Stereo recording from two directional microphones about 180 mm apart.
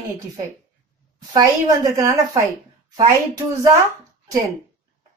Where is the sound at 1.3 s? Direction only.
20° right (ahead or behind).